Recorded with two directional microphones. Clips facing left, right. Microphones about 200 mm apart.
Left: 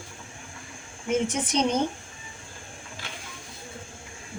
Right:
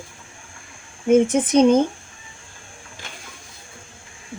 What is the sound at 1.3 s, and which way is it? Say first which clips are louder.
Speech: right 11 dB; 50° right (ahead or behind).